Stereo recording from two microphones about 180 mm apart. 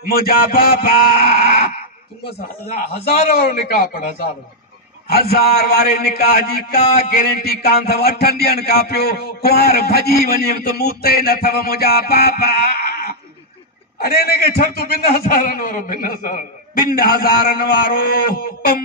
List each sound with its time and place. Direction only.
0.0 s a man's voice: 55° left (ahead or behind)
2.6 s a man's voice: 55° left (ahead or behind)
7.6 s a man's voice: 60° left (ahead or behind)